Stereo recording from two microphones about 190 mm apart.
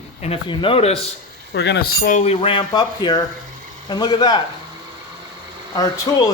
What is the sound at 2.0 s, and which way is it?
Speech, 35° left (ahead or behind).